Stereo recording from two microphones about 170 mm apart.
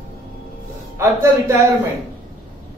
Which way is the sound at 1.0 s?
15° right (ahead or behind).